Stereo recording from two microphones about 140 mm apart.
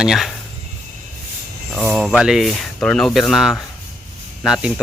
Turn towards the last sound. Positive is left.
turn(degrees=-5)  # may be behind; listen again after turning